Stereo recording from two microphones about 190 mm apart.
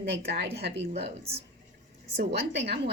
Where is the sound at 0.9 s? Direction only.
30° right (ahead or behind).